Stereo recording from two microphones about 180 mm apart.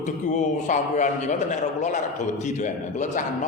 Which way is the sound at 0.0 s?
40° left (ahead or behind).